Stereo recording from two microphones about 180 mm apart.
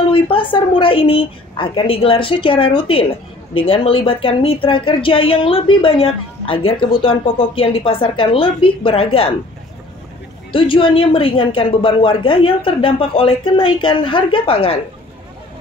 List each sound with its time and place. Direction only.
0.1 s a woman's voice: 30° left (ahead or behind)
10.5 s speech: 30° left (ahead or behind)